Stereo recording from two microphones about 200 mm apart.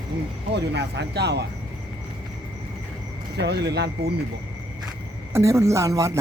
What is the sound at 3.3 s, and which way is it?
Speech, 60° right (ahead or behind).